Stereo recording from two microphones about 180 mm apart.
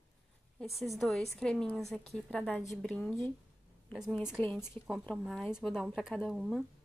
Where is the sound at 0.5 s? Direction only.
Centre (ahead or behind).